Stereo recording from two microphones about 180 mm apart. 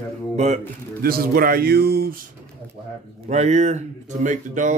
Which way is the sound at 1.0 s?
55° right (ahead or behind).